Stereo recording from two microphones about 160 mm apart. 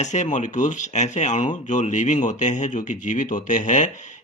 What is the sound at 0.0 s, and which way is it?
Speech, 45° left (ahead or behind).